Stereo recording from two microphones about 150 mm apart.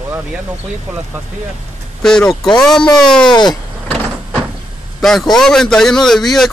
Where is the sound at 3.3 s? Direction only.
30° left (ahead or behind).